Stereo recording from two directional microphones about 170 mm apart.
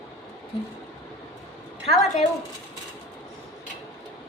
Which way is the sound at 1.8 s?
35° left (ahead or behind).